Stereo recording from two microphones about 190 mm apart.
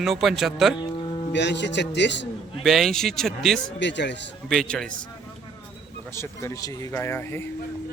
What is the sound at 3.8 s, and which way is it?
Speech, 70° left (ahead or behind).